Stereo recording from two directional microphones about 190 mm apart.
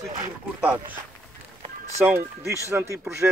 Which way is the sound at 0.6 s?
10° right (ahead or behind).